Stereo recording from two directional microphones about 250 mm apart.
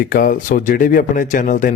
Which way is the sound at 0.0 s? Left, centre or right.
Left.